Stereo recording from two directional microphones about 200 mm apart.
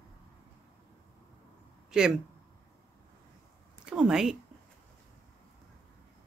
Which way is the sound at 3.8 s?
5° right (ahead or behind).